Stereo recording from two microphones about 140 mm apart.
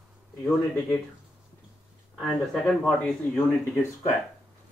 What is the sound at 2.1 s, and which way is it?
Speech, centre (ahead or behind).